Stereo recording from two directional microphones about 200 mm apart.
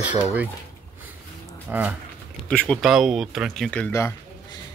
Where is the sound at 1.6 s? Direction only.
10° right (ahead or behind).